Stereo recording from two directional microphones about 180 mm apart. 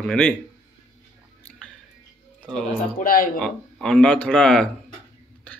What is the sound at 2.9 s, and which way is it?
Speech, 50° left (ahead or behind).